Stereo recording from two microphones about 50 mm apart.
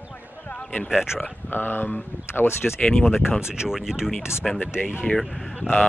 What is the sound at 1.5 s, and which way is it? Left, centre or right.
Speech, left.